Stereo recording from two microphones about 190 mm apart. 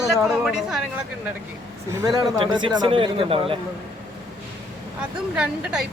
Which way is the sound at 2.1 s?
25° right (ahead or behind).